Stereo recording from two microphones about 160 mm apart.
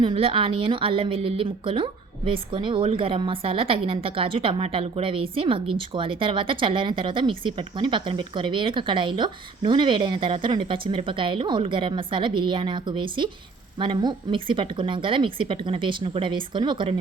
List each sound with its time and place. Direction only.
0.0 s speech: 35° right (ahead or behind)